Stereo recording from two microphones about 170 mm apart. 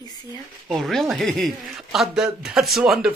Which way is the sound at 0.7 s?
Centre (ahead or behind).